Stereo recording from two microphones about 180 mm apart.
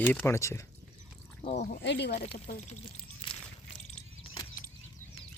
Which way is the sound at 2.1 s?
35° left (ahead or behind).